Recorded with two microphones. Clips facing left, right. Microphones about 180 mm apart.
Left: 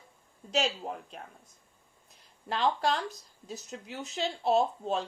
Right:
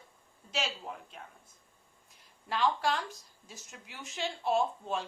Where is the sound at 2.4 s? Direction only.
35° left (ahead or behind).